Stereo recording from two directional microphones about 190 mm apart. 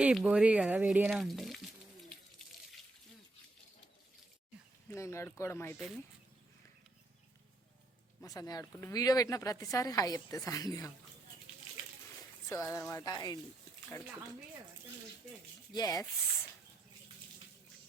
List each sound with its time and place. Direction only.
0.0 s speech: 5° right (ahead or behind)
4.9 s speech: 15° left (ahead or behind)
8.2 s speech: 20° left (ahead or behind)
12.5 s speech: 15° left (ahead or behind)
15.7 s speech: 20° left (ahead or behind)